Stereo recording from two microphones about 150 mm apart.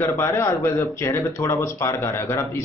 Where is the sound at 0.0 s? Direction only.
20° left (ahead or behind).